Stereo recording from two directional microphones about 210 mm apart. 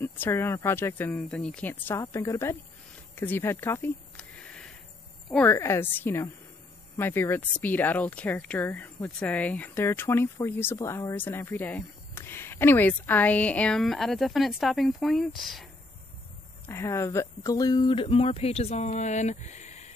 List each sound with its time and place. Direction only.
0.0 s speech: 10° left (ahead or behind)
3.2 s a sound: 10° left (ahead or behind)
5.3 s speech: 10° left (ahead or behind)
16.6 s speech: 10° left (ahead or behind); by 19.9 s 35° left (ahead or behind)